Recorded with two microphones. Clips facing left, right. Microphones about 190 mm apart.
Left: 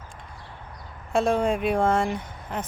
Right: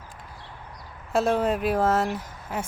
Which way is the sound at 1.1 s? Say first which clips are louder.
Even; 5° right (ahead or behind).